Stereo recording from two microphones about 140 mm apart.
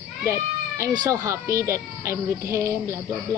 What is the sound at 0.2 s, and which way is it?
Speech, 20° right (ahead or behind).